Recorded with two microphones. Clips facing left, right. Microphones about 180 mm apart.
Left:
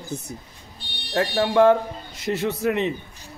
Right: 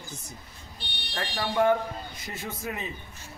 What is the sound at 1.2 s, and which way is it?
Speech, 75° left (ahead or behind).